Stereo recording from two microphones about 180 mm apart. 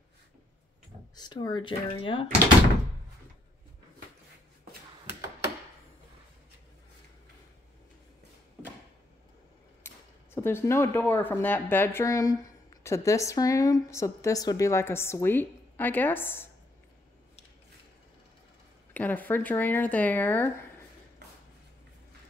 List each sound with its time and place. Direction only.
1.1 s speech: 25° left (ahead or behind)
9.8 s speech: 15° left (ahead or behind)
18.9 s speech: 10° left (ahead or behind)